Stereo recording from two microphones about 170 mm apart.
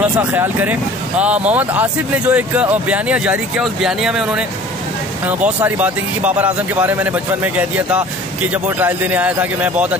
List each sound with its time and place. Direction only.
0.3 s speech: 10° right (ahead or behind)